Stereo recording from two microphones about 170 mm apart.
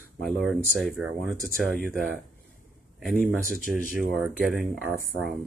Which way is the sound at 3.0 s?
Centre (ahead or behind).